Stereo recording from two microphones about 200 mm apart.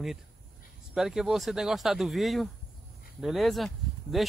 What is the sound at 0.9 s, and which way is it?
Speech, centre (ahead or behind).